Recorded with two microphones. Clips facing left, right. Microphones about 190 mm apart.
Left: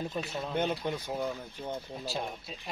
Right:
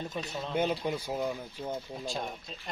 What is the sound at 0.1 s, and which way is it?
Speech, 5° left (ahead or behind).